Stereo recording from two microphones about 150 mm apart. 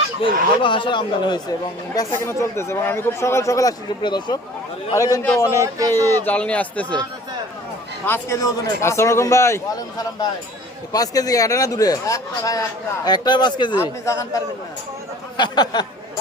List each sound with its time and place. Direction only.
0.2 s speech: 35° left (ahead or behind)
2.0 s speech: 20° left (ahead or behind)
5.5 s speech: 20° right (ahead or behind)
6.1 s a man's voice: 15° left (ahead or behind)
8.0 s speech: 15° left (ahead or behind)
14.0 s speech: 20° left (ahead or behind)